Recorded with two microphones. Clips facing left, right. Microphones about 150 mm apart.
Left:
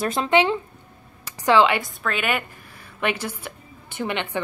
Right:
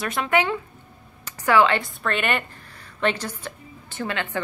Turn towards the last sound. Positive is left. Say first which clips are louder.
# left 1 dB
turn(degrees=15)  # may be behind; listen again after turning